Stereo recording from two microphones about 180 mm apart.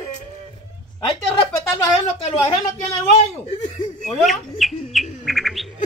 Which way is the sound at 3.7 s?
40° left (ahead or behind).